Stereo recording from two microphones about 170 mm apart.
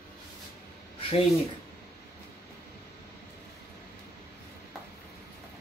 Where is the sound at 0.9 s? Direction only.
35° left (ahead or behind).